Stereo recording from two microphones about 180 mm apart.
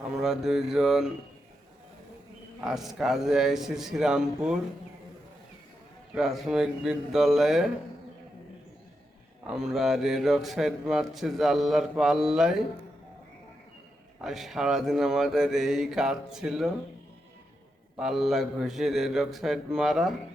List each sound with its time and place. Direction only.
0.1 s a man's voice: centre (ahead or behind)
2.6 s a man's voice: centre (ahead or behind)
6.1 s a man's voice: centre (ahead or behind)
9.5 s a man's voice: 5° right (ahead or behind)
14.2 s a man's voice: centre (ahead or behind)
17.9 s a man's voice: centre (ahead or behind)